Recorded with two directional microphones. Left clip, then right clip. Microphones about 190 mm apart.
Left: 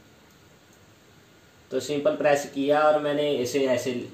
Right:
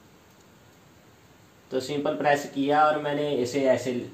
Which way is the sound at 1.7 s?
25° right (ahead or behind).